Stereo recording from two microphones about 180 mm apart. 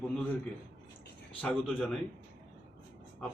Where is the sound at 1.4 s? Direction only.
5° left (ahead or behind).